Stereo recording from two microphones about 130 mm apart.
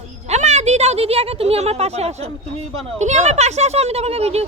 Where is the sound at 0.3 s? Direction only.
60° right (ahead or behind).